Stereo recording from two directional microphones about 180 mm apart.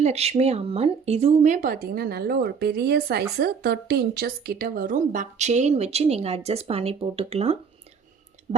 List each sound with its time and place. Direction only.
0.0 s speech: 35° right (ahead or behind)